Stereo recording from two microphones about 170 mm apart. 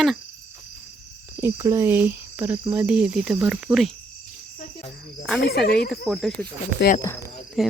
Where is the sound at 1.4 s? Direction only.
15° right (ahead or behind).